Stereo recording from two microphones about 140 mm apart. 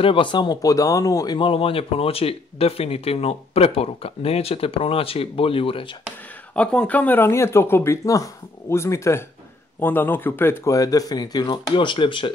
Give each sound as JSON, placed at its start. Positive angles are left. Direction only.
{"t": 0.0, "sound": "speech", "side_deg": 35}
{"t": 6.5, "sound": "speech", "side_deg": 10}